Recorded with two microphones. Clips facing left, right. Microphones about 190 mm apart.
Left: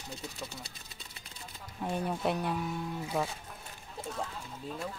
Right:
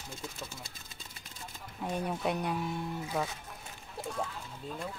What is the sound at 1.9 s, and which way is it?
Speech, centre (ahead or behind).